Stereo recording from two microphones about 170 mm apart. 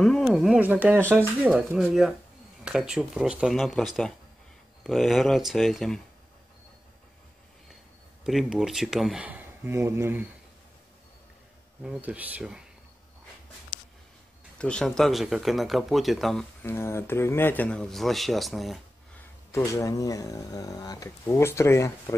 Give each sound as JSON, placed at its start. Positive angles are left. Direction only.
{"t": 0.0, "sound": "speech", "side_deg": 0}
{"t": 8.2, "sound": "speech", "side_deg": 0}
{"t": 11.8, "sound": "speech", "side_deg": -5}
{"t": 14.6, "sound": "speech", "side_deg": 5}
{"t": 16.6, "sound": "speech", "side_deg": 15}
{"t": 19.5, "sound": "speech", "side_deg": 15}